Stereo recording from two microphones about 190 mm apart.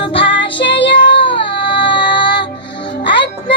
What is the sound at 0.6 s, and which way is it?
Child singing, 70° left (ahead or behind).